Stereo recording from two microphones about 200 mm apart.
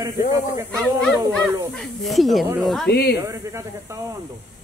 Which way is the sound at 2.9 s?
55° left (ahead or behind).